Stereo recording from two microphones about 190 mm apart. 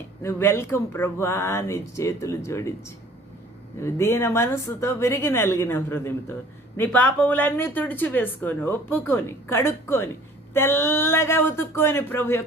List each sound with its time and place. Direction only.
0.2 s speech: 15° left (ahead or behind)
3.8 s speech: 15° left (ahead or behind)